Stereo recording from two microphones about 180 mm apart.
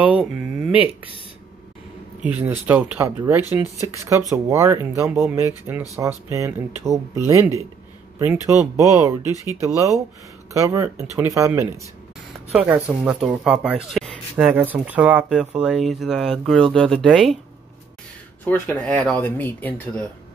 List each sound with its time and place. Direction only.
0.0 s speech: 5° right (ahead or behind)
2.2 s speech: 10° right (ahead or behind)
8.2 s speech: 15° right (ahead or behind)
9.3 s speech: 20° left (ahead or behind)
9.6 s speech: 15° right (ahead or behind)
13.8 s a sound: centre (ahead or behind)
14.3 s speech: 10° right (ahead or behind)
18.4 s speech: 10° left (ahead or behind)